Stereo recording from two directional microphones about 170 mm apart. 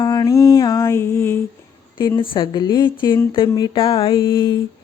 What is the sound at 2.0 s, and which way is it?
Speech, 20° left (ahead or behind).